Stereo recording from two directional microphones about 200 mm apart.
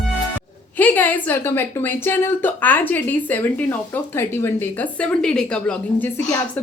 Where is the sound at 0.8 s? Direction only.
10° left (ahead or behind).